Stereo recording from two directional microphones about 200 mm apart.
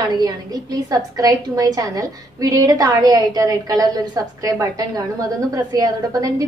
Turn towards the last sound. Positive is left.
turn(degrees=-15)  # may be behind; listen again after turning